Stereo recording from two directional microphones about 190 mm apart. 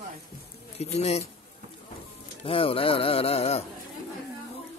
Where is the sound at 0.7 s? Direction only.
35° left (ahead or behind).